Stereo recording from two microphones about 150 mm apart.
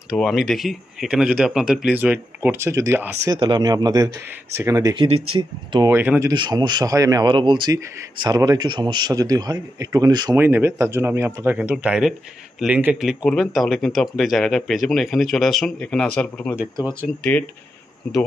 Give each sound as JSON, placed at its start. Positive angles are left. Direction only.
{"t": 0.1, "sound": "a man's voice", "side_deg": 0}
{"t": 4.9, "sound": "speech", "side_deg": -35}
{"t": 5.9, "sound": "speech", "side_deg": -15}
{"t": 6.3, "sound": "a man's voice", "side_deg": -30}
{"t": 10.3, "sound": "speech", "side_deg": -15}